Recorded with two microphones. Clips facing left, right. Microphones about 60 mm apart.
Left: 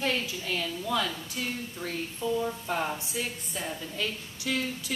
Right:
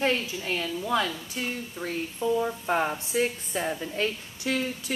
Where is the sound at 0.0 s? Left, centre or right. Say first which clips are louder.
Right 4 dB; right.